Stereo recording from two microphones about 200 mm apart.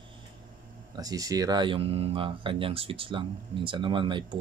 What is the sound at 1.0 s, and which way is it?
Speech, 20° right (ahead or behind).